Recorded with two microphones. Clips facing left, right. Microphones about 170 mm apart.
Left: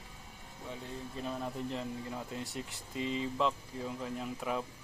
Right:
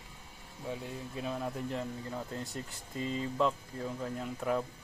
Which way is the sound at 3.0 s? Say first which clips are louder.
Even; 40° right (ahead or behind).